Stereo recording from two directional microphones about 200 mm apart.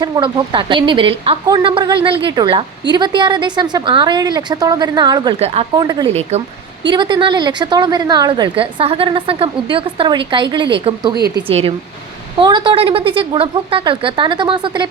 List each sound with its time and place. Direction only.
0.0 s a woman's voice: 20° right (ahead or behind)
5.7 s a woman's voice: 20° right (ahead or behind)
6.3 s a woman's voice: 35° right (ahead or behind)
6.9 s a woman's voice: 25° right (ahead or behind)